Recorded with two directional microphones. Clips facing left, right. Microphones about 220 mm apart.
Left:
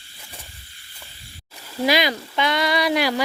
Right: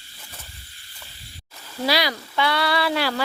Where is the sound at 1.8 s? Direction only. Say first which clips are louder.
Left 3 dB; 20° left (ahead or behind).